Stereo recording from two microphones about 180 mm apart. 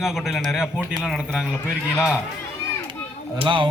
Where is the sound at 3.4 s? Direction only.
25° right (ahead or behind).